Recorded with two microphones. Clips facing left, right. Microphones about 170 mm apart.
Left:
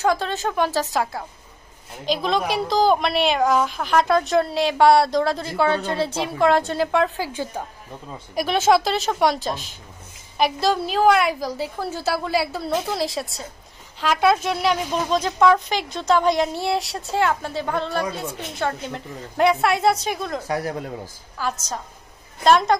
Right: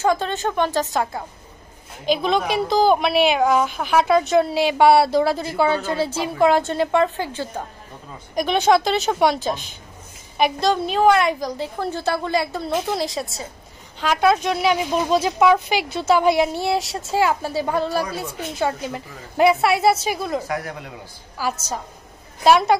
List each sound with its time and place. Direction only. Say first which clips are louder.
0.0 s a woman's voice: right 1 dB; centre (ahead or behind)
8.4 s a woman's voice: right 1 dB; centre (ahead or behind)
20.4 s speech: left 3 dB; 30° left (ahead or behind)
21.4 s a woman's voice: right 2 dB; 5° right (ahead or behind)